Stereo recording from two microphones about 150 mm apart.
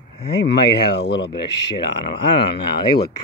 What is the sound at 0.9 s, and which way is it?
Speech, 90° left.